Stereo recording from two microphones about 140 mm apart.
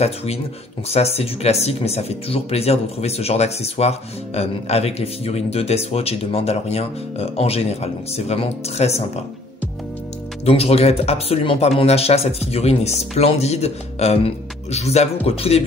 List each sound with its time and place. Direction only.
0.0 s speech: 45° left (ahead or behind)
10.4 s speech: 45° left (ahead or behind)